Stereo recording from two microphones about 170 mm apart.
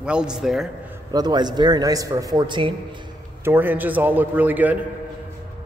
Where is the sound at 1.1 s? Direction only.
25° right (ahead or behind).